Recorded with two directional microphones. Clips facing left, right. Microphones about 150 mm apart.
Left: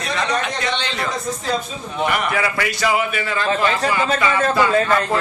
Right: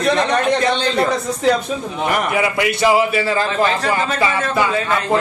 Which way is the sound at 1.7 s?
65° right (ahead or behind).